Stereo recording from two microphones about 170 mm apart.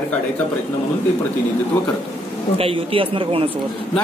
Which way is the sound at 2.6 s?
30° right (ahead or behind).